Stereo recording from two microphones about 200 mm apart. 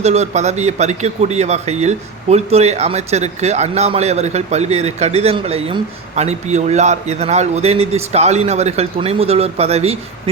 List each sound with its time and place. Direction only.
0.0 s speech: 35° right (ahead or behind)